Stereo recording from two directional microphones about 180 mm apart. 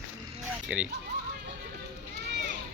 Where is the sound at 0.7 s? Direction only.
5° right (ahead or behind).